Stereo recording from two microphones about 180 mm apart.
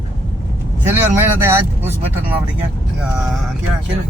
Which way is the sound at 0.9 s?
15° right (ahead or behind).